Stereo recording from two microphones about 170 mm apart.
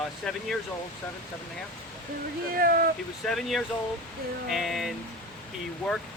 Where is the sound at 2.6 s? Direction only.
60° right (ahead or behind).